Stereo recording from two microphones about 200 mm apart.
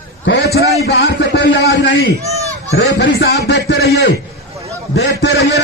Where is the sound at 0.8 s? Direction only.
55° left (ahead or behind).